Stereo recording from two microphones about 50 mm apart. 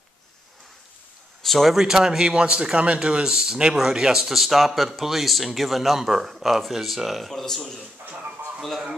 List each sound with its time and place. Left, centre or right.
1.4 s speech: centre
1.8 s speech: centre
8.0 s a sound: right
8.5 s speech: centre